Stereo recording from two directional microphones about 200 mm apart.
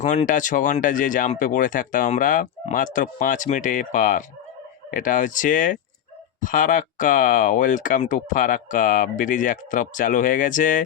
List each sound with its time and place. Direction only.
0.0 s speech: 35° left (ahead or behind)